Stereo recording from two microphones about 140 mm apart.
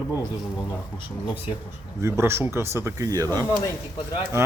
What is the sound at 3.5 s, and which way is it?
Speech, 30° left (ahead or behind).